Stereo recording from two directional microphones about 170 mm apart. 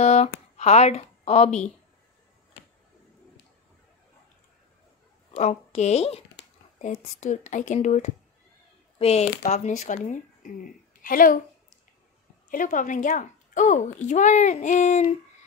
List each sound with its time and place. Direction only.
0.0 s speech: 40° left (ahead or behind)
5.3 s a woman's voice: 40° left (ahead or behind)
8.9 s a sound: 35° left (ahead or behind)
9.5 s a woman's voice: 45° left (ahead or behind)
12.4 s a woman's voice: 50° left (ahead or behind)